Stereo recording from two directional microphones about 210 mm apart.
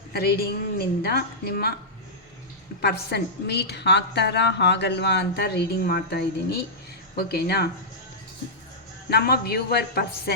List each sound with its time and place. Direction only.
0.1 s a woman's voice: 50° left (ahead or behind)
2.8 s a woman's voice: 50° left (ahead or behind)
9.0 s a woman's voice: 50° left (ahead or behind)